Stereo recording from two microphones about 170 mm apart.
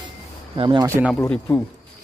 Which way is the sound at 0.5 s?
30° right (ahead or behind).